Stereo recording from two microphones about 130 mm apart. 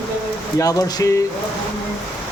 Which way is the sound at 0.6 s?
25° left (ahead or behind).